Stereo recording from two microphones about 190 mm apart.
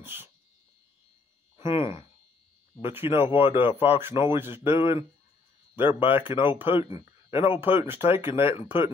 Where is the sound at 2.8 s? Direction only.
10° right (ahead or behind).